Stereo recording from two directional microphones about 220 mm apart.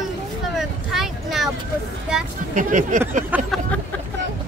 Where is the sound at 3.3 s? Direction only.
5° right (ahead or behind).